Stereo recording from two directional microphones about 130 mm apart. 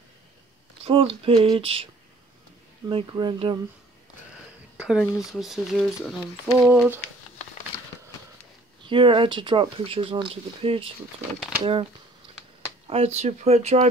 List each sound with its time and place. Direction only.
0.8 s speech: 45° right (ahead or behind)
2.9 s speech: 35° right (ahead or behind)
4.7 s speech: 5° right (ahead or behind)
6.4 s a sound: 10° right (ahead or behind)
8.8 s speech: 40° right (ahead or behind)
12.8 s speech: 50° right (ahead or behind)